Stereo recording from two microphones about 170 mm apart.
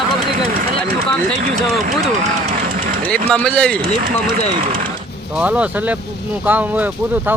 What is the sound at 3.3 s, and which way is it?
Speech, 5° left (ahead or behind).